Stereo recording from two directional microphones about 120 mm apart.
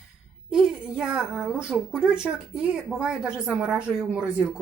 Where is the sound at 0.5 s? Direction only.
5° right (ahead or behind).